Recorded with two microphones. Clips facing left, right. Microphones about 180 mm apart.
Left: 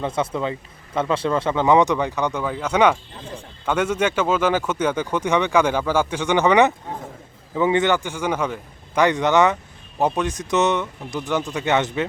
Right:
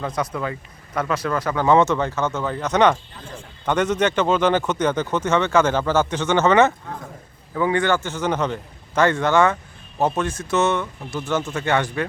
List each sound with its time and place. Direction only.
0.0 s speech: 25° left (ahead or behind)